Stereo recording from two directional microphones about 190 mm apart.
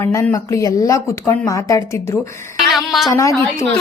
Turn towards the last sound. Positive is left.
turn(degrees=15)  # may be behind; listen again after turning